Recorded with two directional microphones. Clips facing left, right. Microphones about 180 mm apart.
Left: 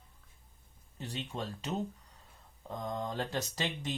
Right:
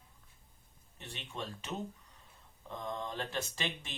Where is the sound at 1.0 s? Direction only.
35° left (ahead or behind).